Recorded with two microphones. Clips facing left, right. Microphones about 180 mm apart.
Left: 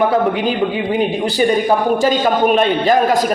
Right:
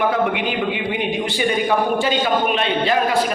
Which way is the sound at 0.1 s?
35° left (ahead or behind).